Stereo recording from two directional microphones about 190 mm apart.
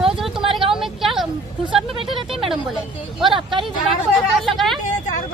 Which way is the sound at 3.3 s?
25° right (ahead or behind).